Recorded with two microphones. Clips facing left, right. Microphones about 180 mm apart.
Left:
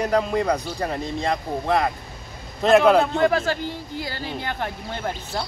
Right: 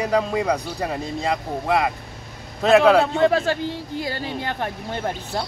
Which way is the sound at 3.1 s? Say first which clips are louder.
Right 2 dB; 25° right (ahead or behind).